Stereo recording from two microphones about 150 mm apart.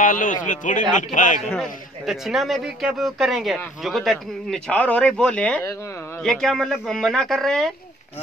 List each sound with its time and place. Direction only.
0.0 s speech: 60° left (ahead or behind)
1.5 s a man's voice: centre (ahead or behind)